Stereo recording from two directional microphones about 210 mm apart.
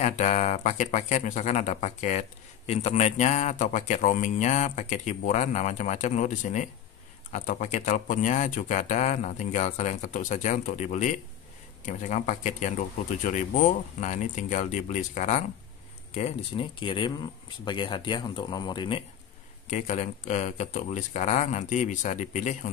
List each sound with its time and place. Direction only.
0.0 s speech: 35° left (ahead or behind)
19.7 s speech: 35° left (ahead or behind)